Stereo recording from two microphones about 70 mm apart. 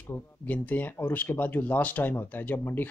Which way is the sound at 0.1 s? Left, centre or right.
Left.